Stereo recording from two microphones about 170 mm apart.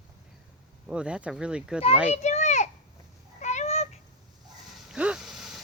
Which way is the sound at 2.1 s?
40° left (ahead or behind).